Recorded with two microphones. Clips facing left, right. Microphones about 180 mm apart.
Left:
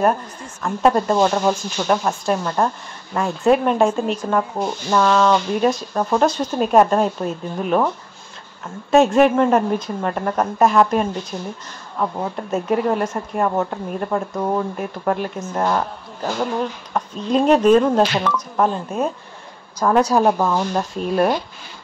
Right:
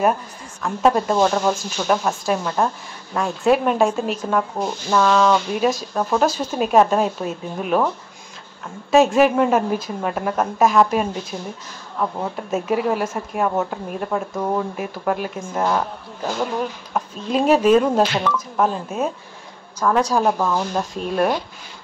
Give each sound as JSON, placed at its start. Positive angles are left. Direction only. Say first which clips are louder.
{"t": 0.6, "sound": "speech", "louder": "left 1 dB", "side_deg": 0}
{"t": 8.9, "sound": "speech", "louder": "left 1 dB", "side_deg": 0}
{"t": 20.1, "sound": "speech", "louder": "left 2 dB", "side_deg": 5}